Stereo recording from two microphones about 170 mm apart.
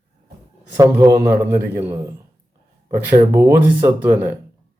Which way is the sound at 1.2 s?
65° right (ahead or behind).